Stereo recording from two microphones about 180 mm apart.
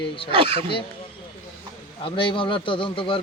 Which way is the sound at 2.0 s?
30° left (ahead or behind).